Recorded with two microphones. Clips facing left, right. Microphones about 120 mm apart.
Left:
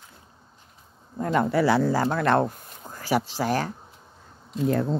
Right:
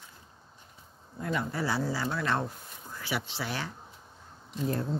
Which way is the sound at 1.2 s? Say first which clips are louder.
Left 9 dB; 50° left (ahead or behind).